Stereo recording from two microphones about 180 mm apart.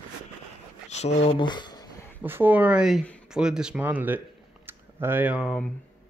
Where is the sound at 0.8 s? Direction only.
40° left (ahead or behind).